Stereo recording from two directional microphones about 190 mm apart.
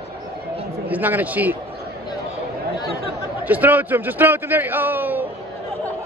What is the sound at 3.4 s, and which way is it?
A man's voice, 10° right (ahead or behind).